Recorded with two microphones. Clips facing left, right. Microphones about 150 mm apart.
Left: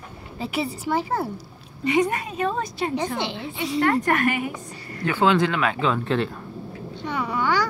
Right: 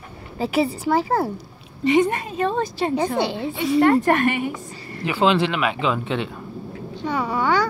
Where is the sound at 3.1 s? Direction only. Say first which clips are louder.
Right 6 dB; 45° right (ahead or behind).